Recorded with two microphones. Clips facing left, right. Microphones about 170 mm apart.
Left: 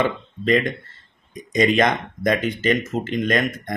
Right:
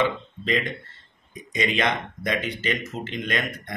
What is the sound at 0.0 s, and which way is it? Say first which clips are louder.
Speech: left 3 dB; 45° left (ahead or behind).